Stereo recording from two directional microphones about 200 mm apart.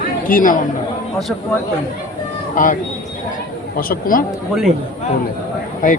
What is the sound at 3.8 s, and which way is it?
Speech, 45° left (ahead or behind).